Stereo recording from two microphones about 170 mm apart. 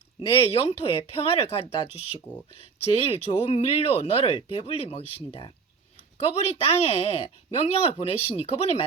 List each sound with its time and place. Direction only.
0.2 s speech: 35° left (ahead or behind)